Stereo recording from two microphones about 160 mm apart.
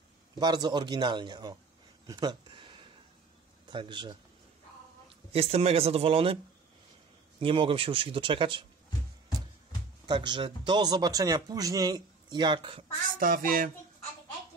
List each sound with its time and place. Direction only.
0.4 s speech: 25° right (ahead or behind)
2.0 s a sound: 25° right (ahead or behind)
3.7 s speech: 30° right (ahead or behind)
5.3 s speech: 40° right (ahead or behind)
7.3 s speech: 35° right (ahead or behind)
10.0 s speech: 30° right (ahead or behind)
13.2 s speech: 60° right (ahead or behind)